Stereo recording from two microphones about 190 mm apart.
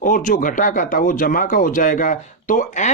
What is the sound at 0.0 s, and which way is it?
Speech, 45° left (ahead or behind).